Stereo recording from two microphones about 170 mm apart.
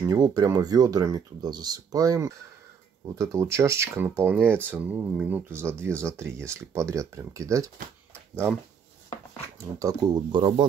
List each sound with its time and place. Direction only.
0.0 s speech: 20° right (ahead or behind)
9.6 s speech: 20° right (ahead or behind)